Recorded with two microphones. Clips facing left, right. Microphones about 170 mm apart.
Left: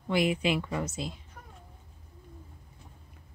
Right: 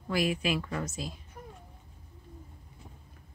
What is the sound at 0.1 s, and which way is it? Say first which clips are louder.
A woman's voice: left 2 dB; 25° left (ahead or behind).